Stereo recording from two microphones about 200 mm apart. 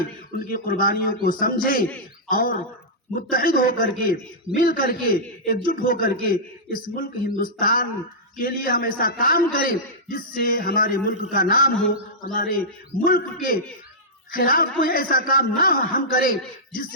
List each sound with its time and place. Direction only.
0.3 s a man's voice: 45° left (ahead or behind)
14.3 s a man's voice: 45° left (ahead or behind)